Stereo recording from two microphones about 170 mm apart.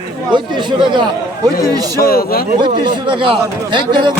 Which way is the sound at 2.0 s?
60° left (ahead or behind).